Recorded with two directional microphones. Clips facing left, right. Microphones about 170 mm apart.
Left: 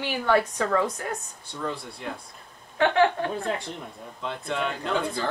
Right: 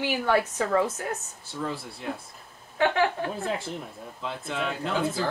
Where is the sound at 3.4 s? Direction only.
5° right (ahead or behind).